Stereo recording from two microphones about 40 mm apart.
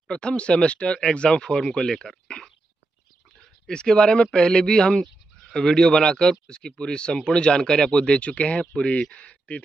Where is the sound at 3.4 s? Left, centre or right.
Centre.